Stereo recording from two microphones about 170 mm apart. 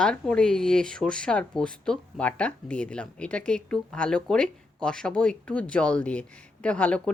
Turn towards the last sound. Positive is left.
turn(degrees=5)  # may be behind; listen again after turning